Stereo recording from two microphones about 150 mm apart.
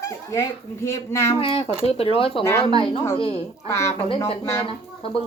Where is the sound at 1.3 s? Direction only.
40° left (ahead or behind).